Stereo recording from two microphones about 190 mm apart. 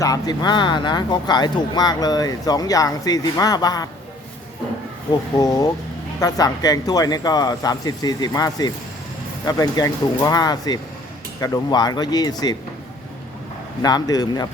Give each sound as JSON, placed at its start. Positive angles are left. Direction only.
{"t": 0.0, "sound": "speech", "side_deg": 20}
{"t": 5.4, "sound": "speech", "side_deg": 20}
{"t": 13.8, "sound": "speech", "side_deg": 20}